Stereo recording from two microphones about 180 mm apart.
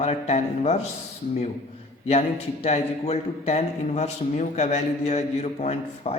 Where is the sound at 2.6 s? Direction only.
35° left (ahead or behind).